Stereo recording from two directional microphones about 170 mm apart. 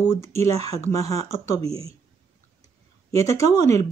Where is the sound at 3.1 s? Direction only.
20° left (ahead or behind).